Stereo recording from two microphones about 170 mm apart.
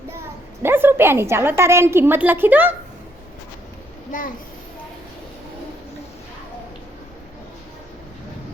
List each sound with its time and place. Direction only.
0.6 s a woman's voice: 10° right (ahead or behind)
4.1 s a child's voice: 50° left (ahead or behind)